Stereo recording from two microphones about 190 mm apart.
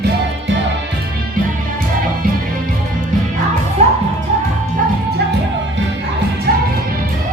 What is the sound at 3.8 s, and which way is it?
Music, 35° right (ahead or behind).